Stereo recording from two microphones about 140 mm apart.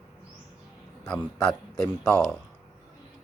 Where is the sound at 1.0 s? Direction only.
5° left (ahead or behind).